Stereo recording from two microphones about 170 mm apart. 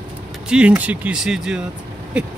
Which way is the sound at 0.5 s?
5° right (ahead or behind).